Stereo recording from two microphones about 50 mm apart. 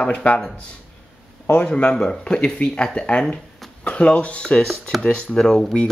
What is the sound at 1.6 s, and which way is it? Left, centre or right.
Speech, left.